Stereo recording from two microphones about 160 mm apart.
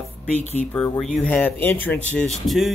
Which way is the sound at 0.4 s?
45° left (ahead or behind).